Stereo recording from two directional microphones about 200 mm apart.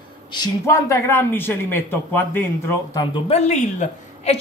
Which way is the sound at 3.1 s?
30° left (ahead or behind).